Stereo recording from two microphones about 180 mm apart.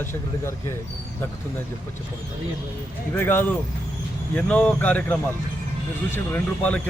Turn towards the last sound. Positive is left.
turn(degrees=10)  # may be behind; listen again after turning